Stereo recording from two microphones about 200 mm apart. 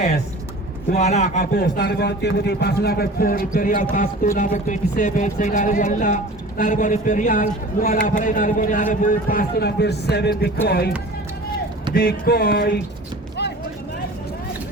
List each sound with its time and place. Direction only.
0.9 s a man's voice: 35° left (ahead or behind); by 10.9 s 50° left (ahead or behind)
11.9 s a man's voice: 50° left (ahead or behind)